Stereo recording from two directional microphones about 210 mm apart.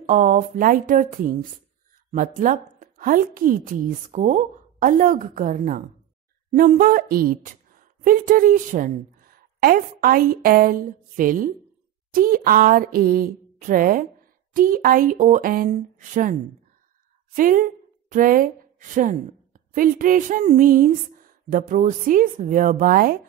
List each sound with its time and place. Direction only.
0.0 s a woman's voice: 35° right (ahead or behind)
12.1 s a sound: 40° right (ahead or behind)
14.5 s a woman's voice: 40° right (ahead or behind)